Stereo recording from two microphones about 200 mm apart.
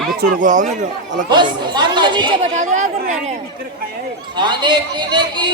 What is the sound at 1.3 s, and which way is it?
Speech, 20° right (ahead or behind).